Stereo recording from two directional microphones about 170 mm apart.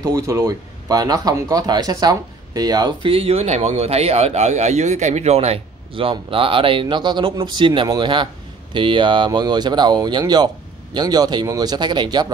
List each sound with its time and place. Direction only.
0.0 s speech: 15° right (ahead or behind)